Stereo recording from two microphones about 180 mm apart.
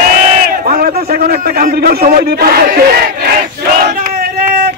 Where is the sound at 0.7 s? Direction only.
55° right (ahead or behind).